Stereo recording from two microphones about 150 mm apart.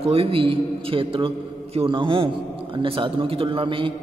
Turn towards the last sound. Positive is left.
turn(degrees=-35)  # may be behind; listen again after turning